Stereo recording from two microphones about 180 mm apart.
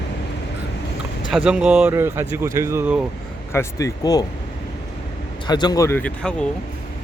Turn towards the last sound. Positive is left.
turn(degrees=5)  # may be behind; listen again after turning